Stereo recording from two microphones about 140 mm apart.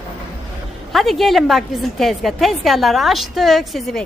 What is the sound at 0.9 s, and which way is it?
A woman's voice, centre (ahead or behind).